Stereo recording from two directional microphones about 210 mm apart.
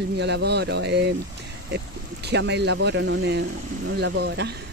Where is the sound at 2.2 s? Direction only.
55° right (ahead or behind).